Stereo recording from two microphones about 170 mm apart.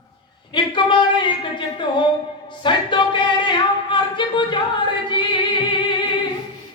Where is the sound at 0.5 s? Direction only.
25° left (ahead or behind).